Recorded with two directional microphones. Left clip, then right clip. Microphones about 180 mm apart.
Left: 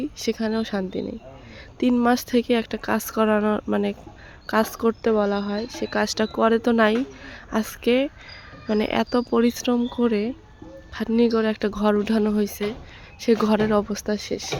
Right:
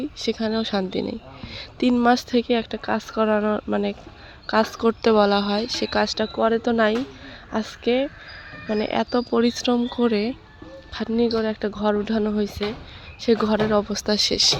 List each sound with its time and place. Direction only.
0.0 s speech: 25° left (ahead or behind)
5.0 s speech: 5° left (ahead or behind)
6.0 s speech: 30° left (ahead or behind); by 10.3 s 15° left (ahead or behind)
11.1 s speech: 35° left (ahead or behind); by 14.2 s 15° left (ahead or behind)
14.2 s speech: centre (ahead or behind)